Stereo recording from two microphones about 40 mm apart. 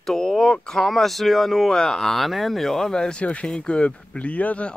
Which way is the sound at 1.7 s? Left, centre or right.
Centre.